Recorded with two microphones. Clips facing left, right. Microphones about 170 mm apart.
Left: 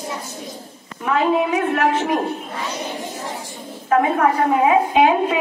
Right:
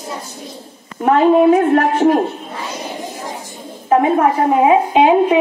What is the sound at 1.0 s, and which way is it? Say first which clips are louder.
A woman's voice: right 8 dB; 40° right (ahead or behind).